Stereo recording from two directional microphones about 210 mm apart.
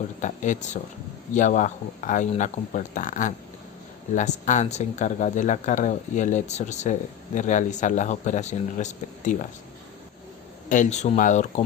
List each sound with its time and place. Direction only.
0.2 s speech: 35° left (ahead or behind)
10.7 s speech: 35° left (ahead or behind)